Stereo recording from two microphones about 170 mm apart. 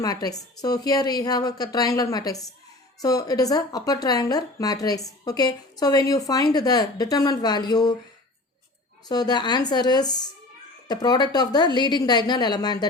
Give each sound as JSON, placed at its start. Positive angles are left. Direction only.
{"t": 0.0, "sound": "speech", "side_deg": 20}
{"t": 9.0, "sound": "speech", "side_deg": 25}